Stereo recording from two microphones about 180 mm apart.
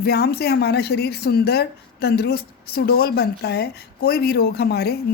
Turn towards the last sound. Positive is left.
turn(degrees=65)  # may be behind; listen again after turning